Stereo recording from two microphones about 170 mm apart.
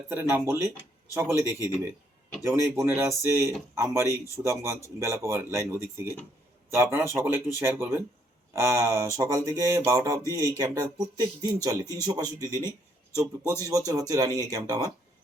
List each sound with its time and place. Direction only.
0.1 s speech: 10° right (ahead or behind)
13.4 s speech: 15° left (ahead or behind)
13.7 s speech: 20° right (ahead or behind)